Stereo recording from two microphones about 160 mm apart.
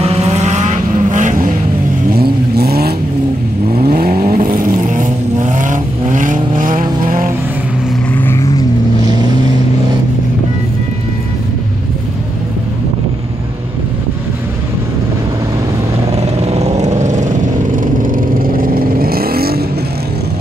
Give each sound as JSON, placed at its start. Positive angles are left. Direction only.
{"t": 0.0, "sound": "vehicle", "side_deg": -40}
{"t": 2.1, "sound": "vehicle", "side_deg": -75}
{"t": 8.1, "sound": "vehicle", "side_deg": 15}
{"t": 16.2, "sound": "vehicle", "side_deg": -40}
{"t": 18.0, "sound": "vehicle", "side_deg": -60}